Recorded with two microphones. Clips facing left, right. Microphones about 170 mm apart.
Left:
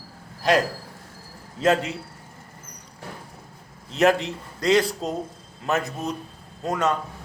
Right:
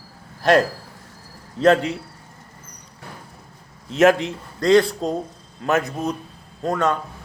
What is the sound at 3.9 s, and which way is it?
A man's voice, centre (ahead or behind).